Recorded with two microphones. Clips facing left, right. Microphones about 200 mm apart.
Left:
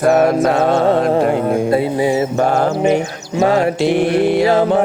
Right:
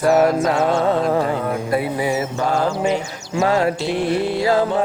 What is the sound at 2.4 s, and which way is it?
Mantra, 60° left (ahead or behind).